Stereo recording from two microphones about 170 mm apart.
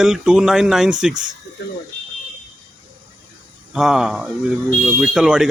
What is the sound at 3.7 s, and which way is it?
A man's voice, 5° right (ahead or behind).